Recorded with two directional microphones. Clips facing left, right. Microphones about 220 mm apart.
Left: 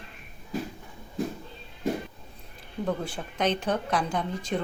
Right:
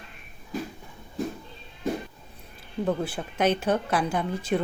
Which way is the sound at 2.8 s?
5° right (ahead or behind).